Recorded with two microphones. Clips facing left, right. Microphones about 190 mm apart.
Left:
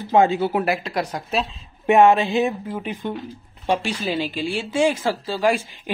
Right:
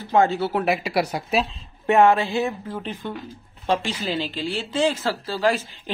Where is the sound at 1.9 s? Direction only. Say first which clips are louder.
Left 2 dB; 20° left (ahead or behind).